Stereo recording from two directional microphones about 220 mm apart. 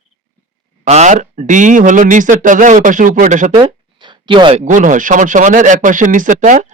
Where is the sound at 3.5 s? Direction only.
20° right (ahead or behind).